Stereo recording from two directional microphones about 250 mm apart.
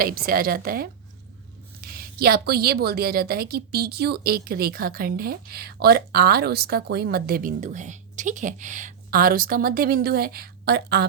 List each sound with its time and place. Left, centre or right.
0.0 s a woman's voice: right